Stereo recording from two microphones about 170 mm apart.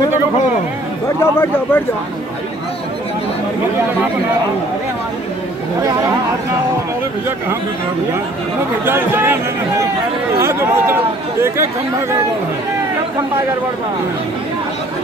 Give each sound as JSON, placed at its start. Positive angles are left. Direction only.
{"t": 1.2, "sound": "speech", "side_deg": 15}
{"t": 8.8, "sound": "speech", "side_deg": -15}